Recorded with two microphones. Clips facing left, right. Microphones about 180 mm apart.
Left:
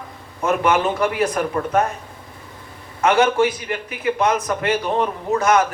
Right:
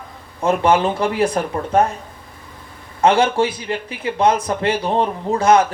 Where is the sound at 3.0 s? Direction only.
30° right (ahead or behind).